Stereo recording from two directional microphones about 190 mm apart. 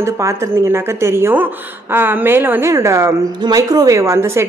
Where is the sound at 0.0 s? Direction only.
15° right (ahead or behind).